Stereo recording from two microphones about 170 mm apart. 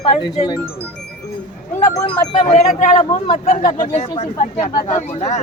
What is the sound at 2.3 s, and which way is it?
Speech, 45° left (ahead or behind).